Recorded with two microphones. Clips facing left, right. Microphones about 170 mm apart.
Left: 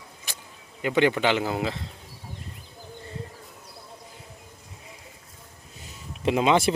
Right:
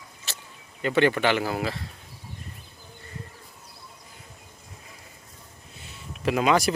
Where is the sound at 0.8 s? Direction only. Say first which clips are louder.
Even; 15° left (ahead or behind).